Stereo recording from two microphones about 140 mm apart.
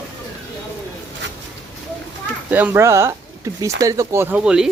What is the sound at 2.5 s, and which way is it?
Speech, 10° right (ahead or behind).